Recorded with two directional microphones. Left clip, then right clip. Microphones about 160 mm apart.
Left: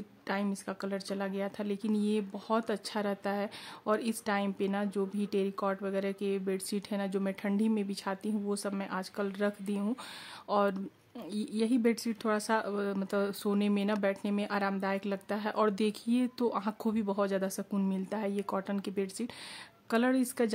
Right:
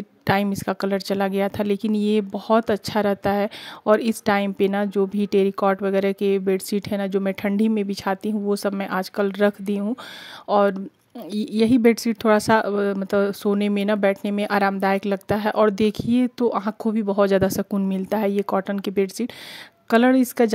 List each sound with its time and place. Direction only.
0.3 s speech: 55° right (ahead or behind); by 17.2 s 35° right (ahead or behind)
17.2 s speech: 50° right (ahead or behind)